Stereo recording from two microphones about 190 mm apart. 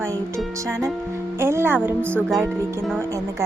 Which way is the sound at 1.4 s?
15° right (ahead or behind).